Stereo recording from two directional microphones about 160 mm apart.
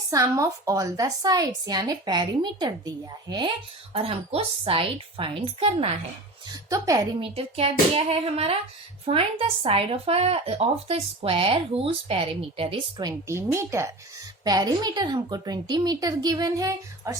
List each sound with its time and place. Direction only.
0.1 s a woman's voice: 20° right (ahead or behind)
3.9 s speech: 35° right (ahead or behind)
6.5 s a woman's voice: 20° right (ahead or behind)
7.2 s a woman's voice: 35° right (ahead or behind); by 17.2 s 20° right (ahead or behind)